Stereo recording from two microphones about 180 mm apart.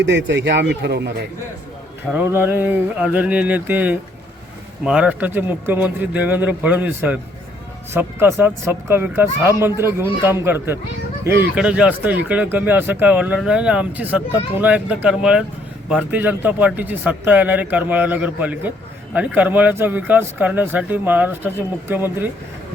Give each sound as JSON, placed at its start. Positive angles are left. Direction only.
{"t": 0.0, "sound": "speech", "side_deg": -85}
{"t": 2.1, "sound": "speech", "side_deg": -10}